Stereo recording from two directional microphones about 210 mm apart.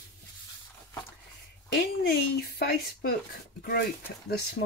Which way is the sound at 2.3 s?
45° left (ahead or behind).